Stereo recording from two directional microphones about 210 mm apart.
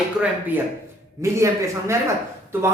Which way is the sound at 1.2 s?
15° right (ahead or behind).